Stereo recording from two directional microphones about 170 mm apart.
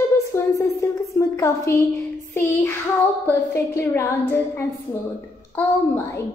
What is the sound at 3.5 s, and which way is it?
Speech, 15° left (ahead or behind).